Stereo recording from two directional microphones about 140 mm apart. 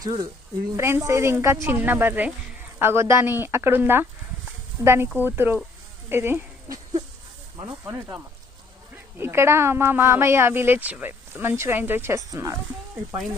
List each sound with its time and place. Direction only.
0.0 s a woman's voice: 30° right (ahead or behind)
0.8 s a woman's voice: 20° right (ahead or behind)
7.9 s speech: 15° right (ahead or behind)